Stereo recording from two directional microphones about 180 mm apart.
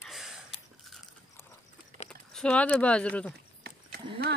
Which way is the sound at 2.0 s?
5° left (ahead or behind).